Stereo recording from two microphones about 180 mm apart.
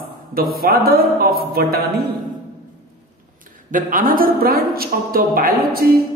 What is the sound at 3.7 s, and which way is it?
A woman's voice, 50° right (ahead or behind).